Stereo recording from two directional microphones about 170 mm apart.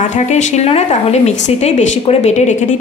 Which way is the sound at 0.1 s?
45° left (ahead or behind).